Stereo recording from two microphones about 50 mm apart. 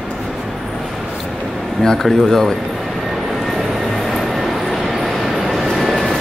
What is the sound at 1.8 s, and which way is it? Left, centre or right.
Speech, centre.